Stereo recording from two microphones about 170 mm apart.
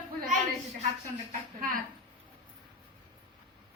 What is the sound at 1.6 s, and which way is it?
Speech, 60° right (ahead or behind).